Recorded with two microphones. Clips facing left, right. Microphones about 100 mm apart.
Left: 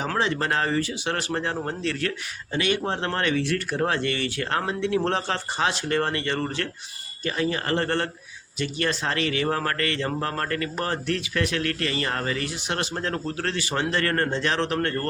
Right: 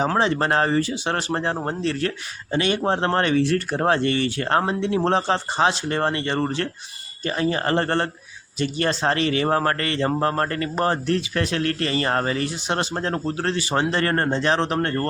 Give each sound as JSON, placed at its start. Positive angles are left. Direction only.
{"t": 0.0, "sound": "speech", "side_deg": -35}